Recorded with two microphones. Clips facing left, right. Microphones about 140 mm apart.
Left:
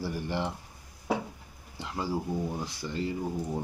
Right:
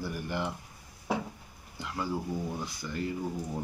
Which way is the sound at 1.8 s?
30° left (ahead or behind).